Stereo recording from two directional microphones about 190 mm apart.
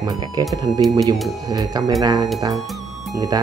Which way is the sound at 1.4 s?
20° right (ahead or behind).